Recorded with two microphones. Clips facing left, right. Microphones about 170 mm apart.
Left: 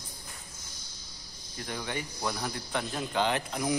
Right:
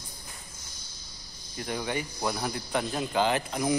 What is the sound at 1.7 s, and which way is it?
Speech, 15° right (ahead or behind).